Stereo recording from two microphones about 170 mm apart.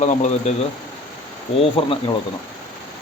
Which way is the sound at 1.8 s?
35° left (ahead or behind).